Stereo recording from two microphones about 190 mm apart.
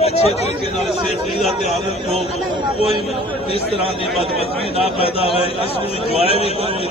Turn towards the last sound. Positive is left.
turn(degrees=30)  # may be behind; listen again after turning